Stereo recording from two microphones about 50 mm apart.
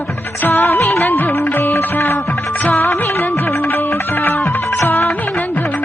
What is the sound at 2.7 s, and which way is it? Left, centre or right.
Music, left.